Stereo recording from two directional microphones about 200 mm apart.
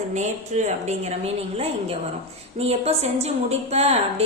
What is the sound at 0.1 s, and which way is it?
A woman's voice, 35° right (ahead or behind).